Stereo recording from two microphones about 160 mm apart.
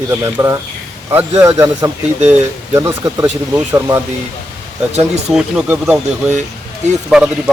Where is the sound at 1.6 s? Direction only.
15° right (ahead or behind).